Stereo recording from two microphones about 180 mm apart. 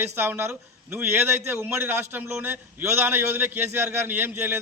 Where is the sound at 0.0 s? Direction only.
15° right (ahead or behind).